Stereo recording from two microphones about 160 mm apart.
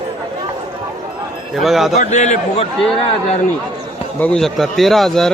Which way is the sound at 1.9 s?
45° left (ahead or behind).